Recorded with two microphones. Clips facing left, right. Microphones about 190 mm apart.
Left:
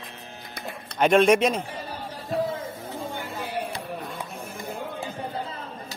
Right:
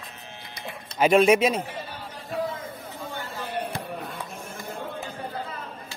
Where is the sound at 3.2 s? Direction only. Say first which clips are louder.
Right 2 dB; 15° left (ahead or behind).